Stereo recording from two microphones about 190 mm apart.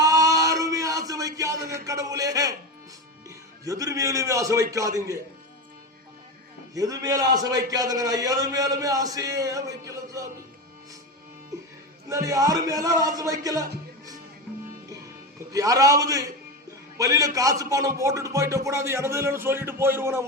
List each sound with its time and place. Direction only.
0.0 s a sound: 20° right (ahead or behind)
3.2 s a man's voice: 20° right (ahead or behind)
6.7 s a man's voice: 20° right (ahead or behind)
12.0 s a man's voice: 20° right (ahead or behind)
15.5 s a man's voice: 20° right (ahead or behind)